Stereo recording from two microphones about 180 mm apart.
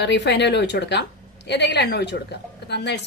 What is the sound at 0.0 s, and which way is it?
Speech, 75° left (ahead or behind).